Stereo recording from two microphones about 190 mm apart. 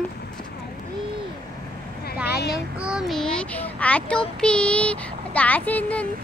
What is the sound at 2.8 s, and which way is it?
A child's voice, centre (ahead or behind).